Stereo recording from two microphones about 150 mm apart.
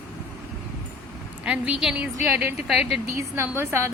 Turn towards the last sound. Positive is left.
turn(degrees=-15)  # may be behind; listen again after turning